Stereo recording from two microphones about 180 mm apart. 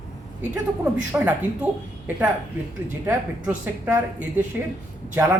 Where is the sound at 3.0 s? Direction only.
10° right (ahead or behind).